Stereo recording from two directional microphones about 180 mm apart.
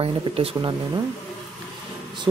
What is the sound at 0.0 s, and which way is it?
Speech, 30° right (ahead or behind).